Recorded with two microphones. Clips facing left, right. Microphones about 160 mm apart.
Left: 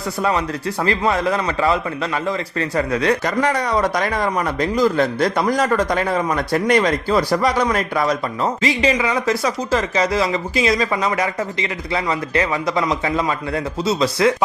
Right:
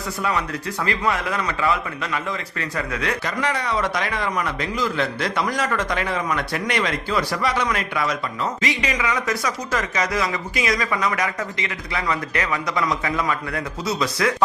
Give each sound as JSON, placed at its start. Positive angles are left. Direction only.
{"t": 0.2, "sound": "a man's voice", "side_deg": 35}